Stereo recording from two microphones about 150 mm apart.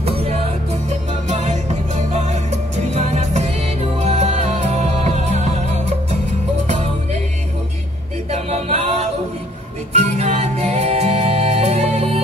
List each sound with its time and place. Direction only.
0.0 s music: 40° right (ahead or behind)
8.3 s music: 45° right (ahead or behind)